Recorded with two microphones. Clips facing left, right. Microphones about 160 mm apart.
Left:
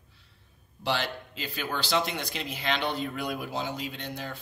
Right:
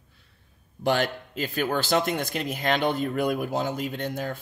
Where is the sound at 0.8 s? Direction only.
50° right (ahead or behind).